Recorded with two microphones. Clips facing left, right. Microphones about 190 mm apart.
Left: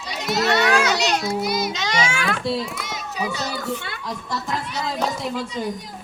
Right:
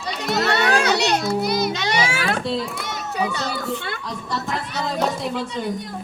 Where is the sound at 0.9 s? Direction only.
55° right (ahead or behind).